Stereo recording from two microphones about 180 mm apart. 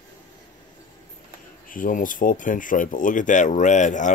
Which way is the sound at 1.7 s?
50° left (ahead or behind).